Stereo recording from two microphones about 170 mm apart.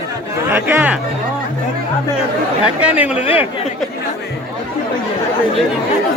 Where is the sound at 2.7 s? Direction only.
10° right (ahead or behind).